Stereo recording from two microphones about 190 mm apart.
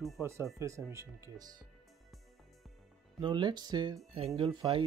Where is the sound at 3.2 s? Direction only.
25° right (ahead or behind).